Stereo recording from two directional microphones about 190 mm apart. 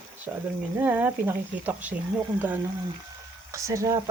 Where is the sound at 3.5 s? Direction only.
15° right (ahead or behind).